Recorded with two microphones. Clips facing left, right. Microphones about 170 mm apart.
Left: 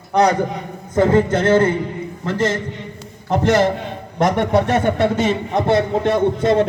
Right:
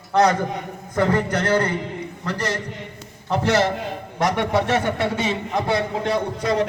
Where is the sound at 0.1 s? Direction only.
15° left (ahead or behind).